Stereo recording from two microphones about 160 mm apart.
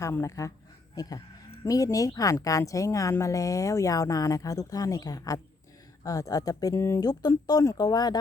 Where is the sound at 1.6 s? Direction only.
20° left (ahead or behind).